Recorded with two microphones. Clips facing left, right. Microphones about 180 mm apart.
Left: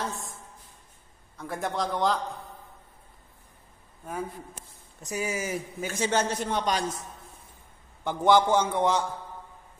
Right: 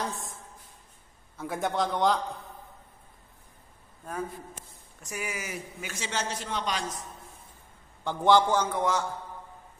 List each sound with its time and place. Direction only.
0.0 s a sound: centre (ahead or behind)
1.4 s a man's voice: centre (ahead or behind)
4.0 s a man's voice: 10° left (ahead or behind)
5.0 s a man's voice: 30° left (ahead or behind); by 6.8 s 45° left (ahead or behind)
8.0 s a man's voice: 15° left (ahead or behind)